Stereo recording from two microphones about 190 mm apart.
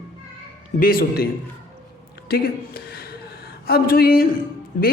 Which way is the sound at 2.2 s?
55° left (ahead or behind).